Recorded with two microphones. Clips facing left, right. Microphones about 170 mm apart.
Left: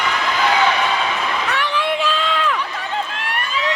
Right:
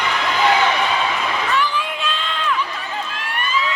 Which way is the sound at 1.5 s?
70° left (ahead or behind).